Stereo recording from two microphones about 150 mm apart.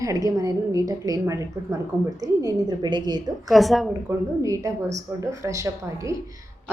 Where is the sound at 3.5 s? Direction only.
Centre (ahead or behind).